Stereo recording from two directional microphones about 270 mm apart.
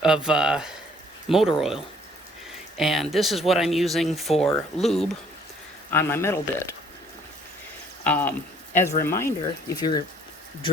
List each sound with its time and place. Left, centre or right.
0.0 s speech: centre
8.0 s speech: centre